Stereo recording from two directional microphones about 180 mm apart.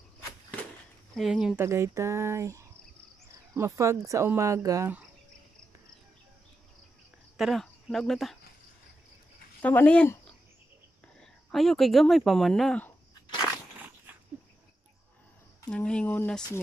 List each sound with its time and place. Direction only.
1.1 s a woman's voice: centre (ahead or behind)
1.6 s speech: 15° right (ahead or behind)
7.3 s speech: centre (ahead or behind)
9.6 s speech: 10° left (ahead or behind)
11.5 s a woman's voice: centre (ahead or behind)
15.7 s a woman's voice: 5° left (ahead or behind)